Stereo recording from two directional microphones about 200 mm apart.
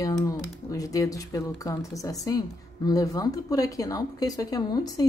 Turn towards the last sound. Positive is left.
turn(degrees=20)  # may be behind; listen again after turning